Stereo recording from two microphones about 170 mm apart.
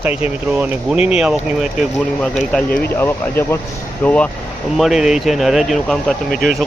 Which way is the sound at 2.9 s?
15° left (ahead or behind).